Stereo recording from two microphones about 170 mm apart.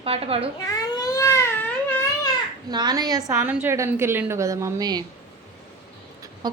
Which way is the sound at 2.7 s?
25° right (ahead or behind).